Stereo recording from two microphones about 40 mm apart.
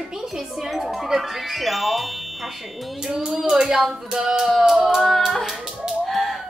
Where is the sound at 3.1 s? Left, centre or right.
Centre.